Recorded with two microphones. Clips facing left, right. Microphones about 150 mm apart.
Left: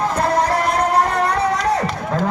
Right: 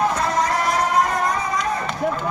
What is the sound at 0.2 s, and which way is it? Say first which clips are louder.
Music: left 4 dB; 60° left (ahead or behind).